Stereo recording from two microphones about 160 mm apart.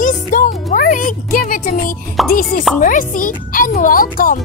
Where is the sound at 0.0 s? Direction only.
55° left (ahead or behind).